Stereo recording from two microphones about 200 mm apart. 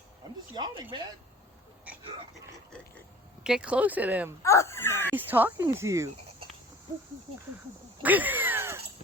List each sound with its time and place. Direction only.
0.5 s speech: 20° right (ahead or behind)
3.4 s speech: 5° right (ahead or behind)
4.4 s speech: 15° left (ahead or behind)
5.1 s speech: 10° right (ahead or behind)
8.0 s a sound: 10° right (ahead or behind)